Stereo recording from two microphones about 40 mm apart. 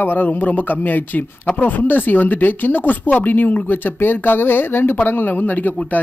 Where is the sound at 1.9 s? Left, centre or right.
Left.